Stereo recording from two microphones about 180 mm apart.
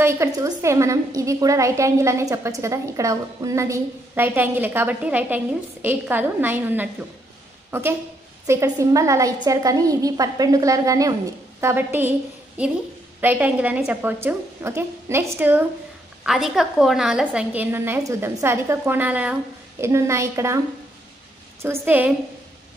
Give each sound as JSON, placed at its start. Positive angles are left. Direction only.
{"t": 0.0, "sound": "a woman's voice", "side_deg": -15}
{"t": 13.2, "sound": "a woman's voice", "side_deg": -10}
{"t": 21.6, "sound": "a woman's voice", "side_deg": -10}